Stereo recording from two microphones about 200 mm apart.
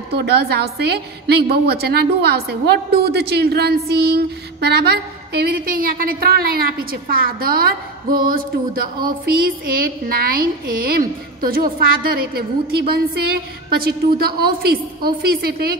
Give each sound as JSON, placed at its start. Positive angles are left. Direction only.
{"t": 0.1, "sound": "a woman's voice", "side_deg": -55}